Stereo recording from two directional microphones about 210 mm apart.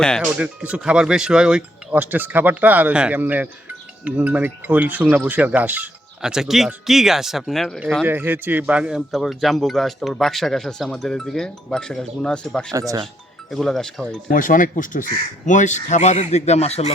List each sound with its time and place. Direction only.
0.0 s speech: centre (ahead or behind)
14.3 s speech: 40° left (ahead or behind)